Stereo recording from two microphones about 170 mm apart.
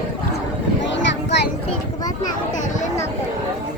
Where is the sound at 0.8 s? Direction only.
90° left.